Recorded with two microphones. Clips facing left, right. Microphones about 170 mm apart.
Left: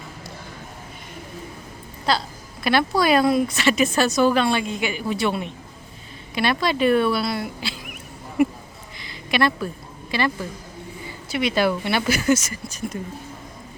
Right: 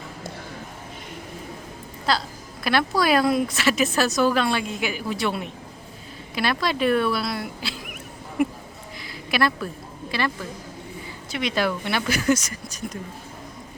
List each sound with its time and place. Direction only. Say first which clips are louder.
2.1 s a woman's voice: left 1 dB; centre (ahead or behind)
9.0 s a sound: left 2 dB; centre (ahead or behind)
10.1 s a woman's voice: left 3 dB; centre (ahead or behind)